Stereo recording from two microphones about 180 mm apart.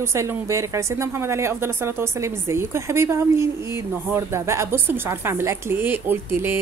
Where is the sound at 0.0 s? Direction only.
15° right (ahead or behind).